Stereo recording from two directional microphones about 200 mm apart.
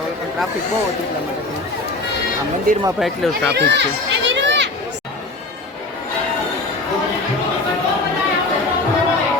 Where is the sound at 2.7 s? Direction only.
45° right (ahead or behind).